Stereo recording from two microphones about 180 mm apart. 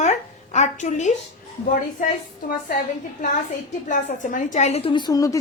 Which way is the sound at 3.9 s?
45° left (ahead or behind).